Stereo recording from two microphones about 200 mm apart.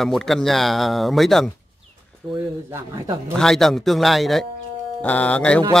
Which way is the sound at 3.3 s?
Centre (ahead or behind).